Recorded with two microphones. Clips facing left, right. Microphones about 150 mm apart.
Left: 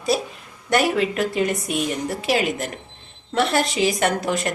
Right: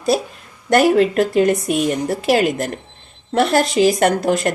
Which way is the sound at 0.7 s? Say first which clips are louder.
Right 7 dB; 45° right (ahead or behind).